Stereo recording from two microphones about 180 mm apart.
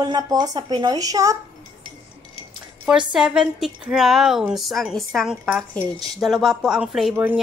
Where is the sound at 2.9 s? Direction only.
5° right (ahead or behind).